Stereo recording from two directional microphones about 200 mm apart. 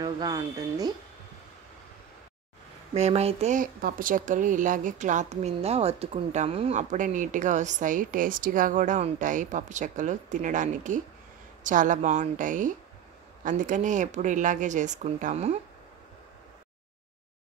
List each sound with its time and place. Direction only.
0.0 s speech: 15° right (ahead or behind)
2.9 s speech: 30° right (ahead or behind)